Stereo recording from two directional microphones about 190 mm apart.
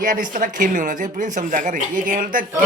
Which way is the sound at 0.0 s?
45° right (ahead or behind).